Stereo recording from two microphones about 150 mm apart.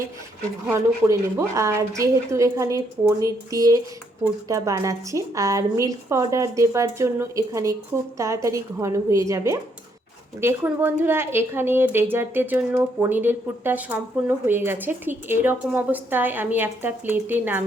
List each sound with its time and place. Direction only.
0.7 s a woman's voice: 20° right (ahead or behind)